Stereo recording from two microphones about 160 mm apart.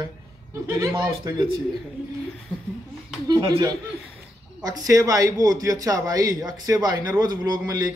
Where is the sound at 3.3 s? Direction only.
25° right (ahead or behind).